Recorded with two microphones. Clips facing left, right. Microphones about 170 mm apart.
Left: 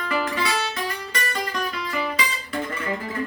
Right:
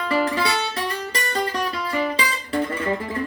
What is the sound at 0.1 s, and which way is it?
Guitar, 30° right (ahead or behind).